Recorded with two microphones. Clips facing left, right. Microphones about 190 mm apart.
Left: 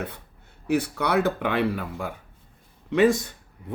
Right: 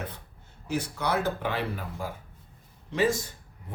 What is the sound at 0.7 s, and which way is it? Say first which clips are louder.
Speech: left 5 dB; 60° left (ahead or behind).